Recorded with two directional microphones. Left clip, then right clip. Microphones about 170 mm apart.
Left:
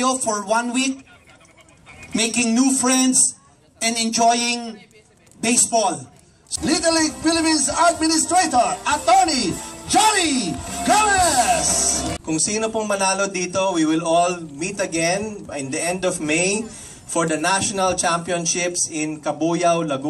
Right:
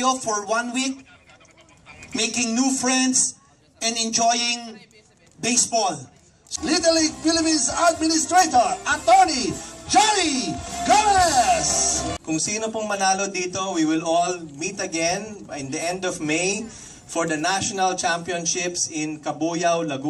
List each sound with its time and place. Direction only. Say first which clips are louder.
0.0 s speech: left 1 dB; 15° left (ahead or behind)
2.3 s speech: left 5 dB; 15° left (ahead or behind)
5.7 s speech: left 3 dB; 15° left (ahead or behind)